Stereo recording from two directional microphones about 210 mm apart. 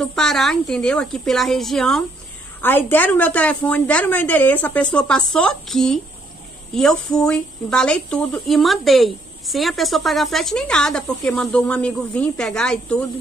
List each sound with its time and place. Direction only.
0.0 s a woman's voice: centre (ahead or behind)